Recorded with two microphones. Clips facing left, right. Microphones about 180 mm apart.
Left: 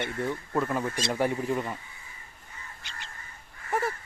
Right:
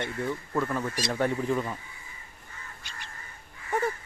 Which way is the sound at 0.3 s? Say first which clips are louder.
Even; 10° left (ahead or behind).